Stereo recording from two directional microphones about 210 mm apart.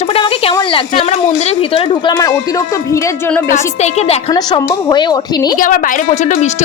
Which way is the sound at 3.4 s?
35° left (ahead or behind).